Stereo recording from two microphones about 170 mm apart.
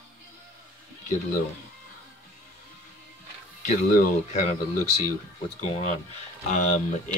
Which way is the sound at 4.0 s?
45° left (ahead or behind).